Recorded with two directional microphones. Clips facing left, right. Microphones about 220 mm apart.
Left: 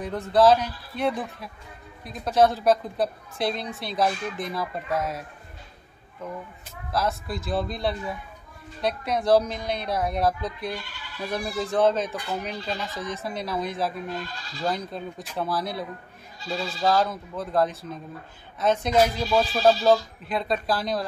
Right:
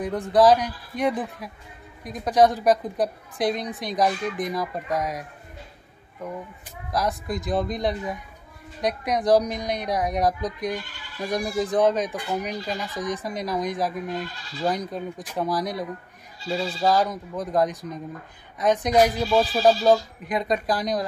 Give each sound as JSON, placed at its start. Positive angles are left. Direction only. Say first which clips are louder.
{"t": 0.0, "sound": "a woman's voice", "louder": "right 1 dB", "side_deg": -15}
{"t": 6.2, "sound": "a woman's voice", "louder": "right 2 dB", "side_deg": -15}